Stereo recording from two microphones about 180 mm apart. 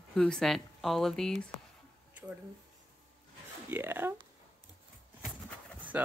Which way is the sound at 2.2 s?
10° right (ahead or behind).